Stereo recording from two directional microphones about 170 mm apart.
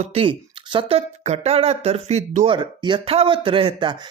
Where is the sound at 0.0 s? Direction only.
35° right (ahead or behind).